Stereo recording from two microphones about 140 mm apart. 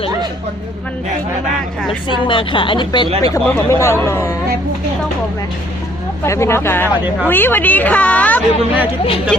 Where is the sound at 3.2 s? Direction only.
20° left (ahead or behind).